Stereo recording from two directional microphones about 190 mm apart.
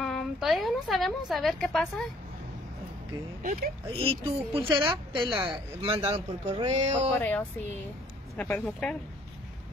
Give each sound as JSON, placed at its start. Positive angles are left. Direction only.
{"t": 0.0, "sound": "a woman's voice", "side_deg": 0}
{"t": 3.4, "sound": "speech", "side_deg": -50}
{"t": 3.9, "sound": "a woman's voice", "side_deg": -30}
{"t": 7.2, "sound": "speech", "side_deg": 10}